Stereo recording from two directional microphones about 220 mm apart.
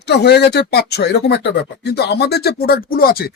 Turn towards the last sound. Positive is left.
turn(degrees=45)  # may be behind; listen again after turning